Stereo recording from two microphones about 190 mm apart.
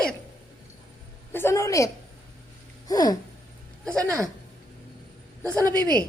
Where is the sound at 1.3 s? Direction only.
10° left (ahead or behind).